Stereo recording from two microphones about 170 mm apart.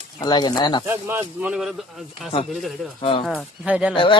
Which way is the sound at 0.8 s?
15° right (ahead or behind).